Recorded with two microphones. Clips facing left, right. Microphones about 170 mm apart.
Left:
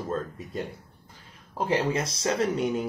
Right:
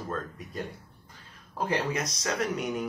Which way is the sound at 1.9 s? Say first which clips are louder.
Left 4 dB; 30° left (ahead or behind).